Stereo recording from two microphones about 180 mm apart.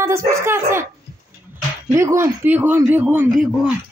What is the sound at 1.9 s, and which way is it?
Speech, 15° right (ahead or behind).